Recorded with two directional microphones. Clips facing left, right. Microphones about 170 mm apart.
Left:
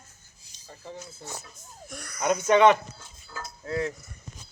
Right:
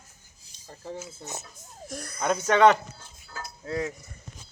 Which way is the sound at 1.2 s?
20° right (ahead or behind).